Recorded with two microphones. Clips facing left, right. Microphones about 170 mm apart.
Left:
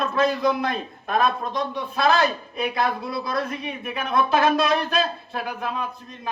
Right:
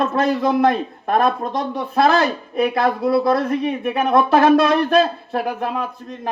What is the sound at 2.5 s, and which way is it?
Speech, 55° right (ahead or behind).